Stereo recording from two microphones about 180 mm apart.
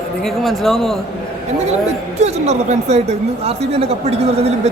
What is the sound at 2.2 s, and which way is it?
A woman's voice, 40° right (ahead or behind).